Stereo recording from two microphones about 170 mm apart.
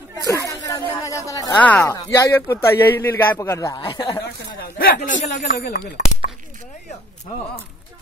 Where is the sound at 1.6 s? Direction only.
10° left (ahead or behind); by 4.5 s 25° left (ahead or behind).